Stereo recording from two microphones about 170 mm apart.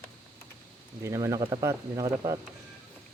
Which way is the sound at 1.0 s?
15° right (ahead or behind).